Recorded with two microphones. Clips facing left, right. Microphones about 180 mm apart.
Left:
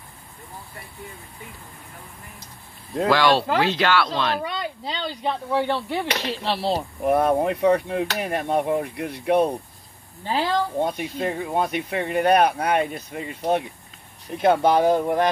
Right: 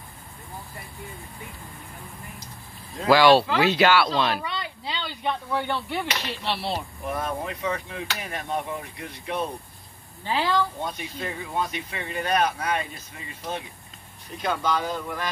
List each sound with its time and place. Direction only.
3.1 s speech: 5° right (ahead or behind)
4.4 s speech: 45° left (ahead or behind)
7.1 s speech: 60° left (ahead or behind)
10.2 s speech: 45° left (ahead or behind)